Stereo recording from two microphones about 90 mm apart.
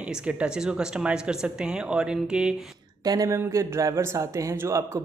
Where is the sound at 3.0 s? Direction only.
45° right (ahead or behind).